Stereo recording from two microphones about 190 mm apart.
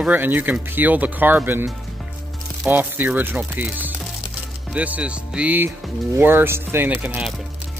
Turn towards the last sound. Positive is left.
turn(degrees=-10)  # may be behind; listen again after turning